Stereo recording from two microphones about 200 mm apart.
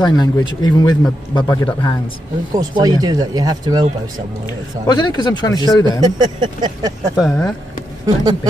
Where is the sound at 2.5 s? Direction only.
20° right (ahead or behind).